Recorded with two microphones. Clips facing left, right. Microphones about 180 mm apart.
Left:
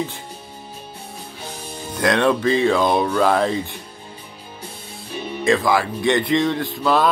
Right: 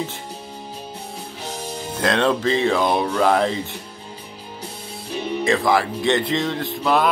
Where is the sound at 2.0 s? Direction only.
25° right (ahead or behind).